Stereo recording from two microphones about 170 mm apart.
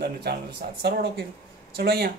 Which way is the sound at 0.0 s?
70° right (ahead or behind).